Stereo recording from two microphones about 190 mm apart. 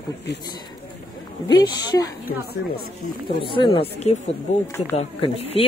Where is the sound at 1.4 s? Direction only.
20° left (ahead or behind).